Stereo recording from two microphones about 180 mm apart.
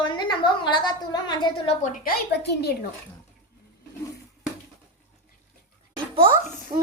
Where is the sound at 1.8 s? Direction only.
50° left (ahead or behind); by 2.7 s 65° left (ahead or behind).